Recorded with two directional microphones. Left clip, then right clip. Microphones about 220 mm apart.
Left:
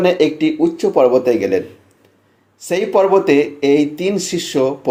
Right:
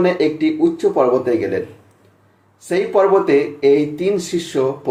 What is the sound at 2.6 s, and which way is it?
Speech, 25° left (ahead or behind).